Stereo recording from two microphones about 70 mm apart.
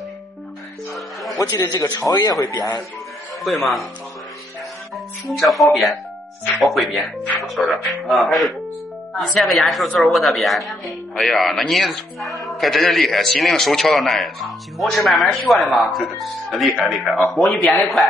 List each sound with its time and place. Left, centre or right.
1.3 s a man's voice: left
3.4 s a man's voice: centre
4.9 s a man's voice: centre